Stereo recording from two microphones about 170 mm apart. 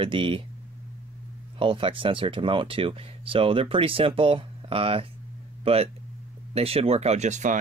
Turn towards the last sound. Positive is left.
turn(degrees=-45)  # may be behind; listen again after turning